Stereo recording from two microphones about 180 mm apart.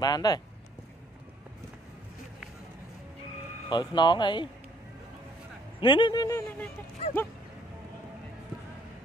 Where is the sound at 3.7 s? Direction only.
25° left (ahead or behind).